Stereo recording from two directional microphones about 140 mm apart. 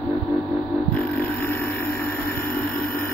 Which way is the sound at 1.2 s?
20° left (ahead or behind).